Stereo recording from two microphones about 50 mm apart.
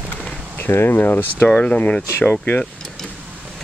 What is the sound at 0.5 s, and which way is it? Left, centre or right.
Speech, left.